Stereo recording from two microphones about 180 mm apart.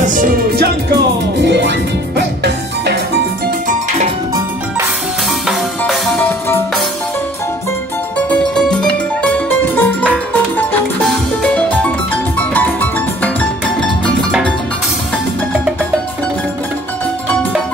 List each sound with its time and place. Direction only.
0.0 s music: 50° right (ahead or behind)
1.4 s music: 75° right (ahead or behind)
5.5 s music: centre (ahead or behind)
8.3 s music: 5° left (ahead or behind)
11.4 s music: 10° left (ahead or behind)